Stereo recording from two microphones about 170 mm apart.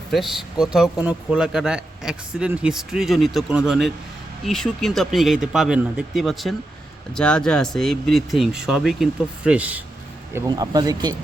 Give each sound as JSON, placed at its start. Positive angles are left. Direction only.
{"t": 0.6, "sound": "a man's voice", "side_deg": -5}
{"t": 10.3, "sound": "speech", "side_deg": -20}